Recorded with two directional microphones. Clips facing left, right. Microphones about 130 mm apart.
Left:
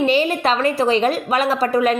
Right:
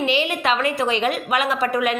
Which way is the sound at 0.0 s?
40° left (ahead or behind).